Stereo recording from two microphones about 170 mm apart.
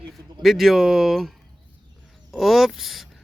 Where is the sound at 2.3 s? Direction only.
Centre (ahead or behind).